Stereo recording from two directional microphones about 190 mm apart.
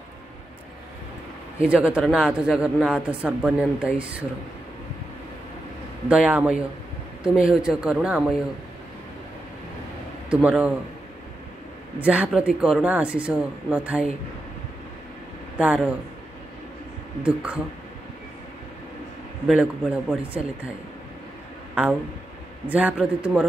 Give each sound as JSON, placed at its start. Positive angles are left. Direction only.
{"t": 1.6, "sound": "speech", "side_deg": -5}
{"t": 6.0, "sound": "speech", "side_deg": -5}
{"t": 10.3, "sound": "speech", "side_deg": -5}
{"t": 12.0, "sound": "speech", "side_deg": -5}
{"t": 15.5, "sound": "speech", "side_deg": -5}
{"t": 17.2, "sound": "speech", "side_deg": -5}
{"t": 19.4, "sound": "speech", "side_deg": -5}
{"t": 22.7, "sound": "speech", "side_deg": -10}